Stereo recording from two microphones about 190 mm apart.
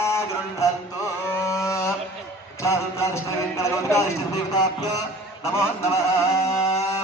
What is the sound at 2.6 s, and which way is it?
A man's voice, 15° left (ahead or behind).